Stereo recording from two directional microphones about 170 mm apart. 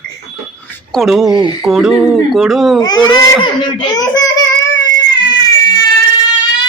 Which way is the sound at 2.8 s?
20° left (ahead or behind).